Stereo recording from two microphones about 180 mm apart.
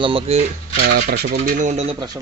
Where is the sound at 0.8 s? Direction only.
55° right (ahead or behind).